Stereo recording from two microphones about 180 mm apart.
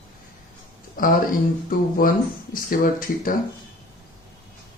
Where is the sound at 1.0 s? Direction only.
50° left (ahead or behind).